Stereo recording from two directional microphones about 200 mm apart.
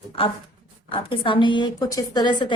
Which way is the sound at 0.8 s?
25° left (ahead or behind).